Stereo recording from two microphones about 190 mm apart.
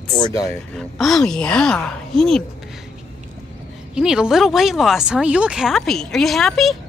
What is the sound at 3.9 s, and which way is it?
Speech, 5° right (ahead or behind).